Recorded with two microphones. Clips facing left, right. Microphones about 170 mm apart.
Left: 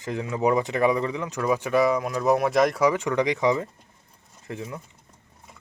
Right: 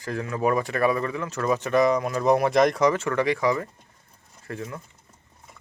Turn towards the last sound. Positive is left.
turn(degrees=15)  # may be behind; listen again after turning